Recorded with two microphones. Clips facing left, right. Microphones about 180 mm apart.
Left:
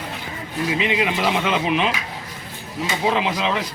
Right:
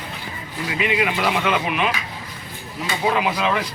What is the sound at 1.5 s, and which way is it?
Speech, 25° left (ahead or behind).